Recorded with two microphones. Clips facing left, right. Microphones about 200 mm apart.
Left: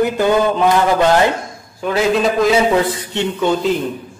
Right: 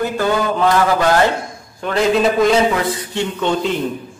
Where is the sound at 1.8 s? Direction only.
5° left (ahead or behind).